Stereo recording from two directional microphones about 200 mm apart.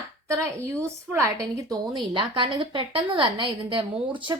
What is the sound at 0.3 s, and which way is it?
A woman's voice, 15° right (ahead or behind).